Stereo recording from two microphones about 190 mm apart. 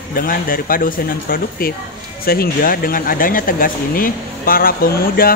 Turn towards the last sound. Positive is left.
turn(degrees=50)  # may be behind; listen again after turning